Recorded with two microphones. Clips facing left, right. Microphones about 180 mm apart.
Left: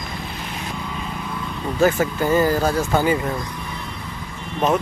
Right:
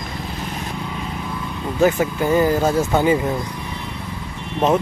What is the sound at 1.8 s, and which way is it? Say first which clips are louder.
Speech: right 1 dB; 15° right (ahead or behind).